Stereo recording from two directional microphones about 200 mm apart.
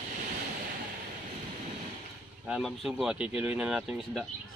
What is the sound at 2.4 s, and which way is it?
Speech, 5° right (ahead or behind).